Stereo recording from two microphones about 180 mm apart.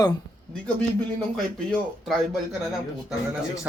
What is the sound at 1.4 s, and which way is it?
Speech, centre (ahead or behind).